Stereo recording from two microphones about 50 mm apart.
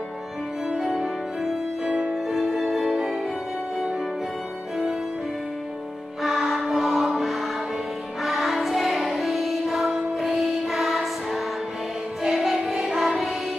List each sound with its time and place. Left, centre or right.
0.7 s music: centre
6.2 s music: centre